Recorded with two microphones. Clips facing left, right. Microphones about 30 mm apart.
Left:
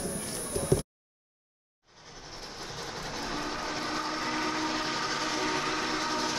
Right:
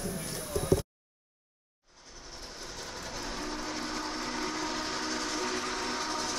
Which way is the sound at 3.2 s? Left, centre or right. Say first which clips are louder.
Left 3 dB; left.